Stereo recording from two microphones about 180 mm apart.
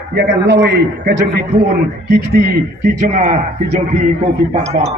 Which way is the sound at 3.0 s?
45° right (ahead or behind).